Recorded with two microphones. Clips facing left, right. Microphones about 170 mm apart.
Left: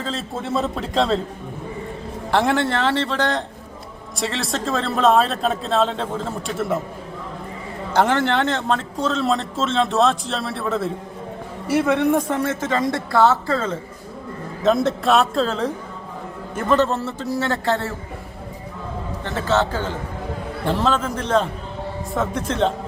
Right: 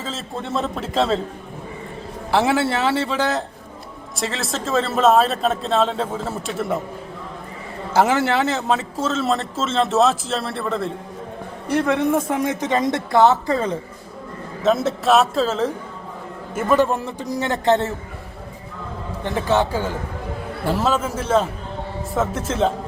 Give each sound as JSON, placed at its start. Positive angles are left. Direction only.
{"t": 0.0, "sound": "a man's voice", "side_deg": 0}
{"t": 2.3, "sound": "a woman's voice", "side_deg": -5}
{"t": 7.9, "sound": "a man's voice", "side_deg": -5}
{"t": 12.3, "sound": "a woman's voice", "side_deg": -15}
{"t": 14.6, "sound": "a man's voice", "side_deg": 0}
{"t": 19.2, "sound": "a woman's voice", "side_deg": -15}